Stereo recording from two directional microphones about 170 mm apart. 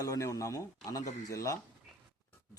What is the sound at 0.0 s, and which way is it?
A man's voice, 20° left (ahead or behind).